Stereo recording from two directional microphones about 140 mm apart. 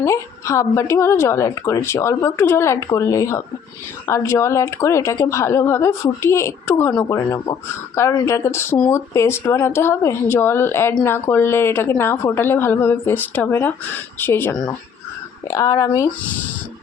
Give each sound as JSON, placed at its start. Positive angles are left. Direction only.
{"t": 0.0, "sound": "a woman's voice", "side_deg": 20}
{"t": 15.4, "sound": "a woman's voice", "side_deg": 25}